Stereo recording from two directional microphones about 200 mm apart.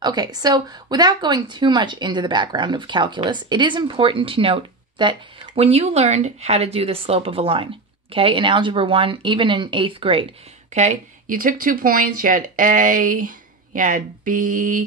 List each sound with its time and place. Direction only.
0.0 s speech: 20° right (ahead or behind); by 14.9 s 40° right (ahead or behind)